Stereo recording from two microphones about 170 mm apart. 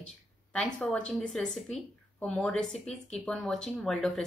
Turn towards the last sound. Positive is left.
turn(degrees=5)  # may be behind; listen again after turning